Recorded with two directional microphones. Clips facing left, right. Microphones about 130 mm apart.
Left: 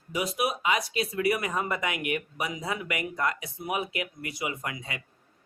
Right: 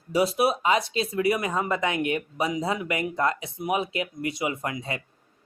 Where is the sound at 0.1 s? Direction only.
30° right (ahead or behind).